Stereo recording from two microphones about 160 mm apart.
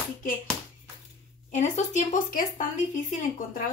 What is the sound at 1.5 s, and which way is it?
A woman's voice, 45° left (ahead or behind).